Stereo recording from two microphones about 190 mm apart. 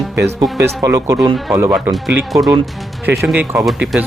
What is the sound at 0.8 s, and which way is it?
Speech, 15° right (ahead or behind).